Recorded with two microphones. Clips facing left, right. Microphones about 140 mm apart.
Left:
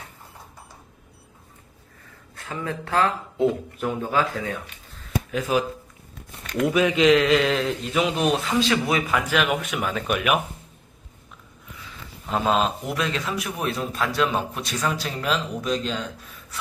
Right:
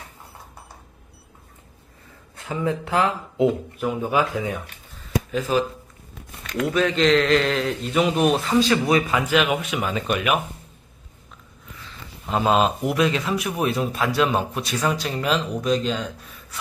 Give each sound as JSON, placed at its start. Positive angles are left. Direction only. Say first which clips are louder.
{"t": 2.3, "sound": "a man's voice", "louder": "right 5 dB", "side_deg": -20}
{"t": 5.3, "sound": "a man's voice", "louder": "right 1 dB", "side_deg": 5}
{"t": 6.7, "sound": "a man's voice", "louder": "left 1 dB", "side_deg": 10}
{"t": 12.3, "sound": "a man's voice", "louder": "right 3 dB", "side_deg": -5}